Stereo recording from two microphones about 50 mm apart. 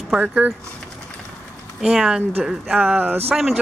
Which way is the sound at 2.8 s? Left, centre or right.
Right.